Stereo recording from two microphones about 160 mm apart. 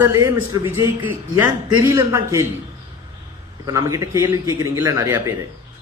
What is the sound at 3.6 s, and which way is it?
A man's voice, 20° right (ahead or behind).